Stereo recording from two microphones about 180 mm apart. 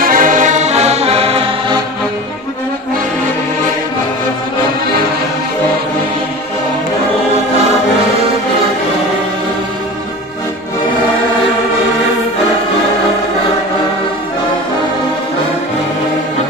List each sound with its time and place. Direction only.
0.0 s music: 50° right (ahead or behind); by 1.8 s 35° right (ahead or behind)